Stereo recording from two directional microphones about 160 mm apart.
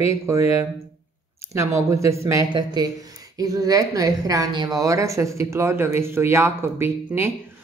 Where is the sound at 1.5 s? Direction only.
20° right (ahead or behind).